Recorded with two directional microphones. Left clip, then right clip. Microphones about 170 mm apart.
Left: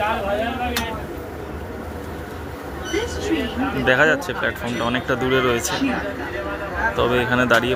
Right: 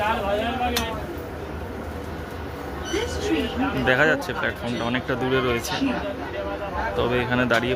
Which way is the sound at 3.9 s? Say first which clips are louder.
Left 3 dB; 10° right (ahead or behind).